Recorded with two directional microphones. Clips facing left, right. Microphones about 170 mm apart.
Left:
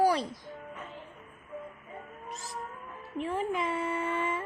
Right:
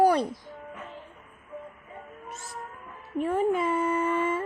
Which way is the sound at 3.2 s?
50° right (ahead or behind).